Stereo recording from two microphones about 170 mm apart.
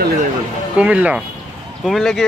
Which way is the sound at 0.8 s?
5° right (ahead or behind).